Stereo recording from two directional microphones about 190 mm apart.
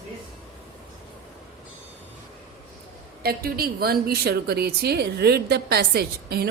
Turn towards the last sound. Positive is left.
turn(degrees=-55)  # may be behind; listen again after turning